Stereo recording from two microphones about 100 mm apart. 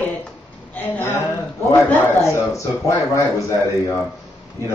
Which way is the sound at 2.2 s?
30° left (ahead or behind).